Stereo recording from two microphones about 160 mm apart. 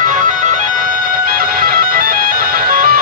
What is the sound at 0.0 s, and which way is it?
Music, 55° right (ahead or behind).